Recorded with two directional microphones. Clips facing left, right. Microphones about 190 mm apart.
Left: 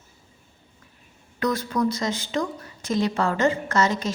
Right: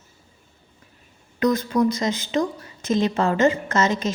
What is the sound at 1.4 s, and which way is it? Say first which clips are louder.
Speech: right 4 dB; 20° right (ahead or behind).